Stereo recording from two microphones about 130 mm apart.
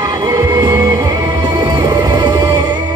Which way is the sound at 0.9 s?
35° right (ahead or behind).